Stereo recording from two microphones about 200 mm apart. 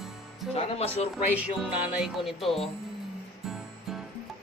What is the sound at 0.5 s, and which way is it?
Speech, 30° left (ahead or behind).